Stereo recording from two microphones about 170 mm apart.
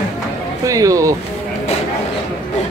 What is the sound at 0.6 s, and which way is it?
Speech, 20° right (ahead or behind).